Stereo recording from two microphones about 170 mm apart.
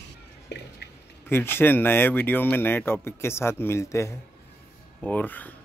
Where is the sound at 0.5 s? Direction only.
80° left.